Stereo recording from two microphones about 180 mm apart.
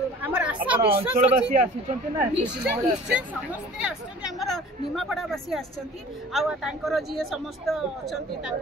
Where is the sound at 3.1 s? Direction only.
5° right (ahead or behind).